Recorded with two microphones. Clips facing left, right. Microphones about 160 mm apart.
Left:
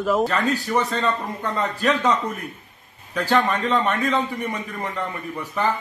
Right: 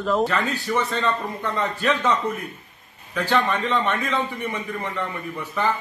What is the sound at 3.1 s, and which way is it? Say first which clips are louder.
Speech: left 1 dB; 40° left (ahead or behind).